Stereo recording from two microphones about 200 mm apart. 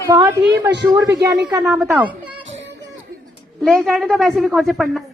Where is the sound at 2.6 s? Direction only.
65° right (ahead or behind).